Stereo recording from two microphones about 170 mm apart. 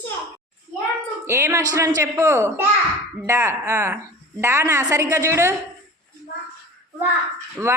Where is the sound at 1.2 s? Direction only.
15° right (ahead or behind).